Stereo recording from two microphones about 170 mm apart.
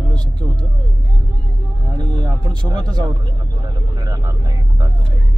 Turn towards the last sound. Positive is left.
turn(degrees=-20)  # may be behind; listen again after turning